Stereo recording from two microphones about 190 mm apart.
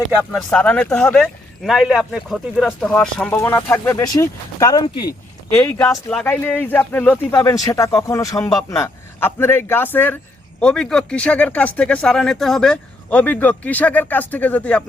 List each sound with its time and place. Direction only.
0.3 s speech: 5° left (ahead or behind)
5.9 s speech: centre (ahead or behind)